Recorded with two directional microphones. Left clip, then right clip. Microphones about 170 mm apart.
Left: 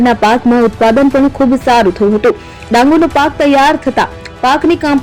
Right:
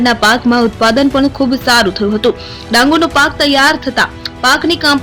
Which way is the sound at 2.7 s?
15° left (ahead or behind).